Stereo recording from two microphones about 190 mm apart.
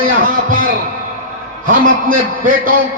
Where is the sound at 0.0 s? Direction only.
45° right (ahead or behind).